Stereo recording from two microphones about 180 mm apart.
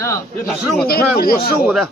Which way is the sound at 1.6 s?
Centre (ahead or behind).